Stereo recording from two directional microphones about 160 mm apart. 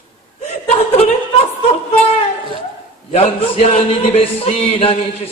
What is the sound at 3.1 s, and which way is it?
A man's voice, 40° left (ahead or behind).